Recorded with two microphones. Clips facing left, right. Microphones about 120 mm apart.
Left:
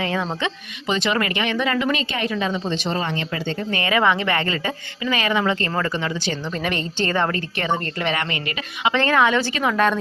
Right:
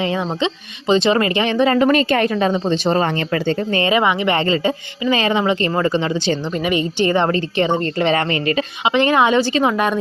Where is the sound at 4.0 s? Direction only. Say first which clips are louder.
Right 2 dB; 15° right (ahead or behind).